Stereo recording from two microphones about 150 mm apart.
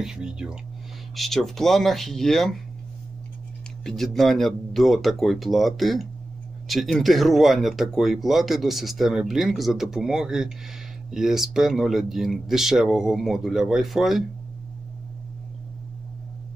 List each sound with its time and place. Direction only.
0.0 s speech: 5° right (ahead or behind)
3.8 s speech: centre (ahead or behind)